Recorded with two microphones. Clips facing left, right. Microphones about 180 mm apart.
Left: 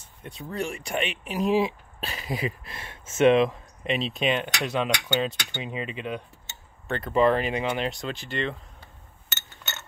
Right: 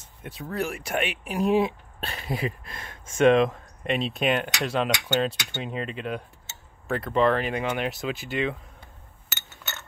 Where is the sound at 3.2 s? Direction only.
45° right (ahead or behind).